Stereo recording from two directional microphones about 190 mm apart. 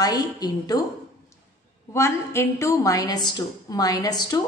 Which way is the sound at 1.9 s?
15° left (ahead or behind).